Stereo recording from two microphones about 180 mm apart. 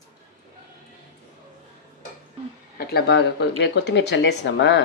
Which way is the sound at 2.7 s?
65° left (ahead or behind).